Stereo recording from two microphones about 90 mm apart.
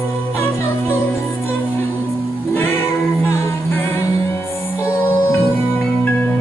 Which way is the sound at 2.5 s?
25° left (ahead or behind).